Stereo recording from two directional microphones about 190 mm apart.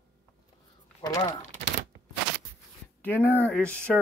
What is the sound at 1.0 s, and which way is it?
Speech, 20° left (ahead or behind).